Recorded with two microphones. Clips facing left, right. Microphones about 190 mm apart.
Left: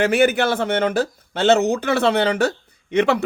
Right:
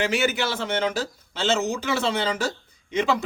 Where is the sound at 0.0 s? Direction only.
55° left (ahead or behind).